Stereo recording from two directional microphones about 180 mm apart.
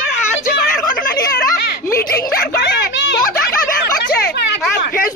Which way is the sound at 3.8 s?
65° left (ahead or behind).